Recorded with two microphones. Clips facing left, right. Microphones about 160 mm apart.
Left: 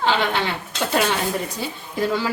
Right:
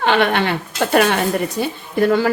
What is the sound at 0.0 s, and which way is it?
A woman's voice, 65° right (ahead or behind).